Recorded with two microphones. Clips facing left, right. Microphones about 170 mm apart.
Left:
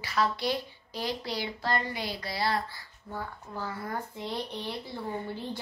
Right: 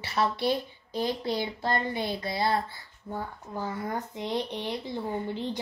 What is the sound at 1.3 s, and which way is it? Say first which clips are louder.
A child's voice: right 2 dB; 20° right (ahead or behind).